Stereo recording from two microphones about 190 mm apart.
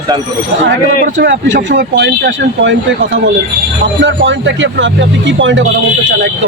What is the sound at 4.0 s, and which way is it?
Speech, 70° right (ahead or behind).